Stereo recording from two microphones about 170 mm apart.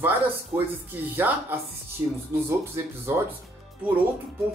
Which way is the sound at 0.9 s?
10° right (ahead or behind).